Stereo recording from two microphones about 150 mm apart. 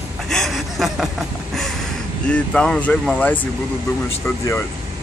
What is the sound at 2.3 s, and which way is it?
Speech, 5° left (ahead or behind).